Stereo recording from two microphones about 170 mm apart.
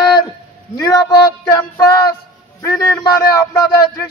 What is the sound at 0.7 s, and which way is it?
Speech, 20° left (ahead or behind).